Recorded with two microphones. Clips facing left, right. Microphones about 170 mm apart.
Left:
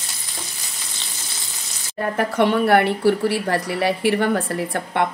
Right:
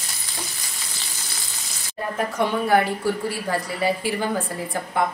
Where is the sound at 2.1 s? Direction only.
65° left (ahead or behind).